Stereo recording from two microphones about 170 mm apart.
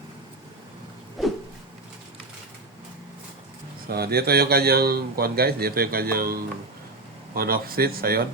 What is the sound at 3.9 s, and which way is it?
Speech, 65° right (ahead or behind).